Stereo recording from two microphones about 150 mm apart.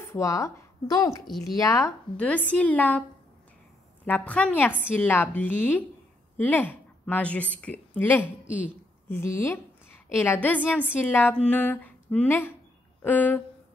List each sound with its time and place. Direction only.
0.0 s speech: 20° left (ahead or behind)
2.1 s a woman's voice: 10° left (ahead or behind)
4.0 s a woman's voice: 10° left (ahead or behind)